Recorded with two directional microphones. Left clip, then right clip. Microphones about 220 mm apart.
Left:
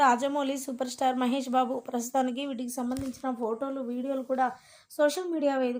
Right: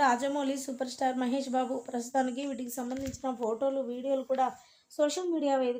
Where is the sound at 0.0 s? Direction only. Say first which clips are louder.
Left 3 dB; 20° left (ahead or behind).